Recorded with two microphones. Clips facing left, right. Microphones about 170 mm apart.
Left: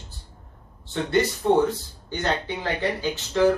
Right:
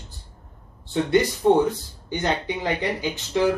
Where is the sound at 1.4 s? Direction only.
20° right (ahead or behind).